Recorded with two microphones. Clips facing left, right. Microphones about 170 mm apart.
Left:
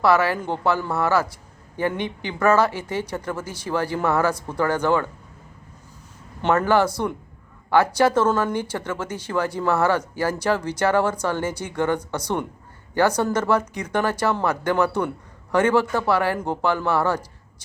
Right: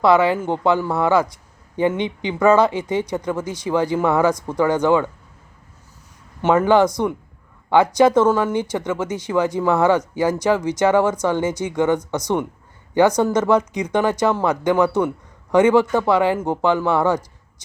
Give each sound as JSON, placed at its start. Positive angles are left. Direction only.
{"t": 0.0, "sound": "speech", "side_deg": -15}
{"t": 6.4, "sound": "speech", "side_deg": -10}